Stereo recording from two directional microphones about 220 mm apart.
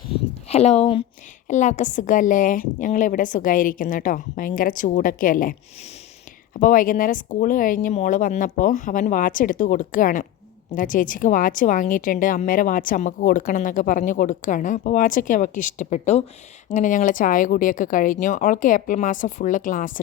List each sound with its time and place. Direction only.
0.4 s a woman's voice: 30° left (ahead or behind)